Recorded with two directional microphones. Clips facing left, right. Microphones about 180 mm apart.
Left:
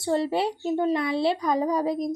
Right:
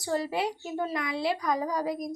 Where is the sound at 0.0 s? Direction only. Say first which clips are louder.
Left 5 dB; 25° left (ahead or behind).